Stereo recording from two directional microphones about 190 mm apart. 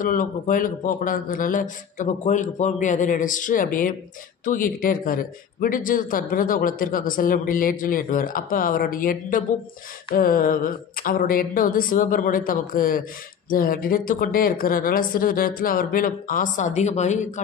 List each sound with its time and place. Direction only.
0.0 s a man's voice: 45° left (ahead or behind)